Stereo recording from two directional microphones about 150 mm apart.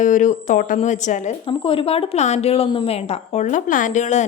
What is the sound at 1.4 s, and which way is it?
Speech, 35° left (ahead or behind).